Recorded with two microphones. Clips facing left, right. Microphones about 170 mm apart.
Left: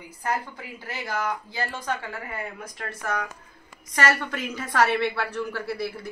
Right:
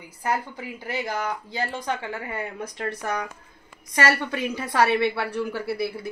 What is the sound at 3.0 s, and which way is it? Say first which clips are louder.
Speech: right 1 dB; 20° right (ahead or behind).